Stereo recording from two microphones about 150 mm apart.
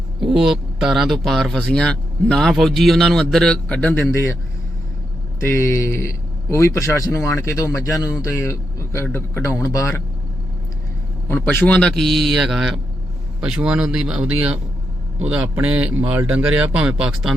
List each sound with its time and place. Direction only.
0.2 s speech: 5° right (ahead or behind); by 4.4 s 15° left (ahead or behind)
5.5 s a man's voice: 15° left (ahead or behind)
11.3 s speech: 15° left (ahead or behind); by 17.3 s 5° right (ahead or behind)